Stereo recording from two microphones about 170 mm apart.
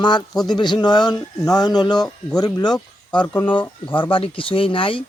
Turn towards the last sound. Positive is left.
turn(degrees=30)  # may be behind; listen again after turning